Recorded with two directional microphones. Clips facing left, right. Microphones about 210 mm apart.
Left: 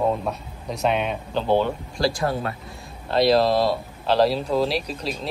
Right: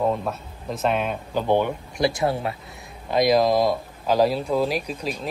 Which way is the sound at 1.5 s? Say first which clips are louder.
Left 1 dB; 20° right (ahead or behind).